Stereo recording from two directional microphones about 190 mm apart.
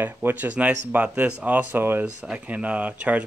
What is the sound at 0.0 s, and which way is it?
Speech, 10° right (ahead or behind).